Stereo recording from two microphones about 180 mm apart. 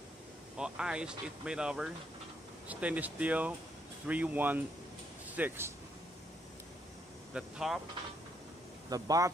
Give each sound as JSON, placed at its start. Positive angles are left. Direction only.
{"t": 0.6, "sound": "speech", "side_deg": -5}
{"t": 7.3, "sound": "speech", "side_deg": -5}
{"t": 8.9, "sound": "speech", "side_deg": -20}